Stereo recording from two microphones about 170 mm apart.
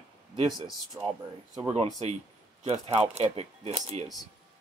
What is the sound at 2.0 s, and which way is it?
Speech, 40° right (ahead or behind).